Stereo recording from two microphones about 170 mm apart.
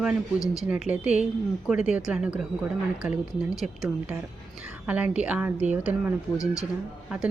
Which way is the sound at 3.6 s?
Centre (ahead or behind).